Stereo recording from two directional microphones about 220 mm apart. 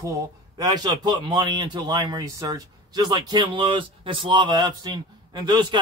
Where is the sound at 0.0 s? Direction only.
15° right (ahead or behind).